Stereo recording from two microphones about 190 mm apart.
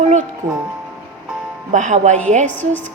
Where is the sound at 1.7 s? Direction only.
40° right (ahead or behind).